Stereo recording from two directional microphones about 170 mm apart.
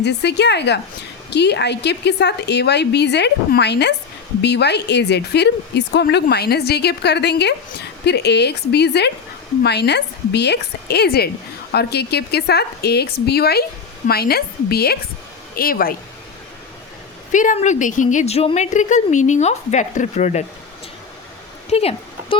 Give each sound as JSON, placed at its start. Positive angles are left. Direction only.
{"t": 0.0, "sound": "a woman's voice", "side_deg": 85}
{"t": 17.3, "sound": "a woman's voice", "side_deg": 50}
{"t": 21.7, "sound": "a sound", "side_deg": 35}